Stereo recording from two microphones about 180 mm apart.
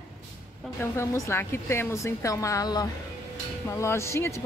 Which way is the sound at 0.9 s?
15° left (ahead or behind).